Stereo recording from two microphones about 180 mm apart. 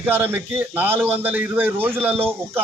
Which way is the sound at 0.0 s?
10° right (ahead or behind).